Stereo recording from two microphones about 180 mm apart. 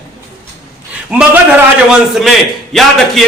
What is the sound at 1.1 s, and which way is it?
A man's voice, 5° right (ahead or behind).